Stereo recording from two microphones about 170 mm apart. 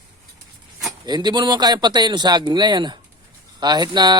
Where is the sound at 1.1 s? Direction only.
25° right (ahead or behind).